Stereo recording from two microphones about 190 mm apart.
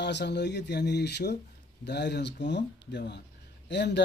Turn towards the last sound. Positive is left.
turn(degrees=65)  # may be behind; listen again after turning